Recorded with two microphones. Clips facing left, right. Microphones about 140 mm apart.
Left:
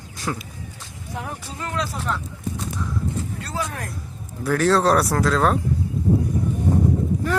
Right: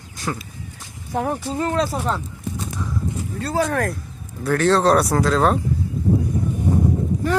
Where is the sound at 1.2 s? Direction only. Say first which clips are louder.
Right 10 dB; 40° right (ahead or behind).